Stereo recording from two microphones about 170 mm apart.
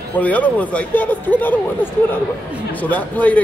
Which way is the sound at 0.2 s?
10° left (ahead or behind).